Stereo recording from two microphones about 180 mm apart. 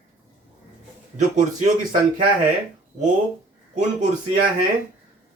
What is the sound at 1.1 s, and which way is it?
Speech, 45° right (ahead or behind).